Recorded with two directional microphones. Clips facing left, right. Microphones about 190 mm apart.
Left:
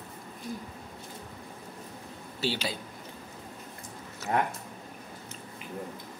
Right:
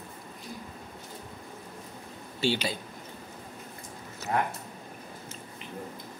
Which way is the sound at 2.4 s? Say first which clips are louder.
Right 3 dB; 5° left (ahead or behind).